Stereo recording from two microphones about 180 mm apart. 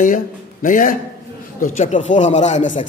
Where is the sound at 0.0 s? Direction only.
45° left (ahead or behind).